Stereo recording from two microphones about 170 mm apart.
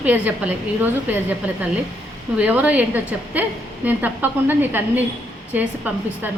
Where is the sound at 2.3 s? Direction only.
10° right (ahead or behind).